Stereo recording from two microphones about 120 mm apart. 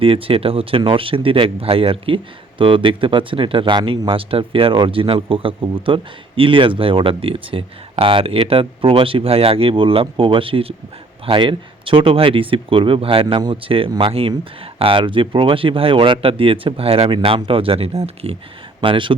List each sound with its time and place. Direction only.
0.0 s speech: 50° right (ahead or behind)
18.8 s speech: 45° right (ahead or behind)